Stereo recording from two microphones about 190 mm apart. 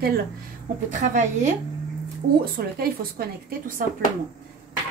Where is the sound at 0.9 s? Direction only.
40° right (ahead or behind).